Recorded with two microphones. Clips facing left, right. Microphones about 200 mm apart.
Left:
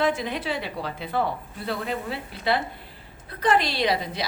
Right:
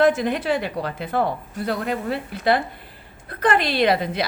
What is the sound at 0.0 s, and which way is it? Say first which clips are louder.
A woman's voice: right 7 dB; 50° right (ahead or behind).